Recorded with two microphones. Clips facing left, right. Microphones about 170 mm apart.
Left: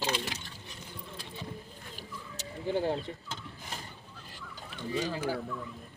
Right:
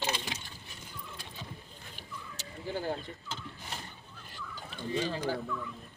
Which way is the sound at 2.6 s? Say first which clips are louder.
Left 5 dB; 25° left (ahead or behind).